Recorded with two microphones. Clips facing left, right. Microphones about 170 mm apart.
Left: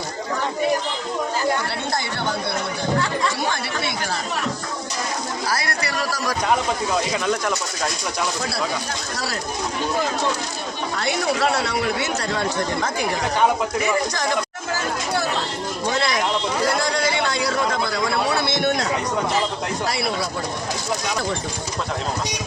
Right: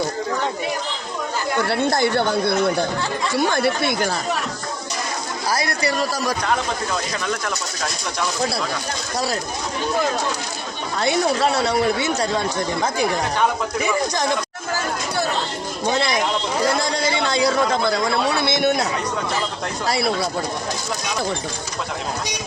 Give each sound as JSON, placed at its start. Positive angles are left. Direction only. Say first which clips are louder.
{"t": 3.3, "sound": "speech", "louder": "right 6 dB", "side_deg": -55}
{"t": 6.0, "sound": "speech", "louder": "right 2 dB", "side_deg": -20}
{"t": 15.9, "sound": "a sound", "louder": "right 2 dB", "side_deg": -20}
{"t": 18.3, "sound": "a man's voice", "louder": "right 2 dB", "side_deg": -10}